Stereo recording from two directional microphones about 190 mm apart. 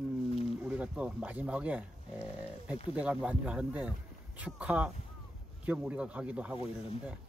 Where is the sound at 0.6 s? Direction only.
5° right (ahead or behind).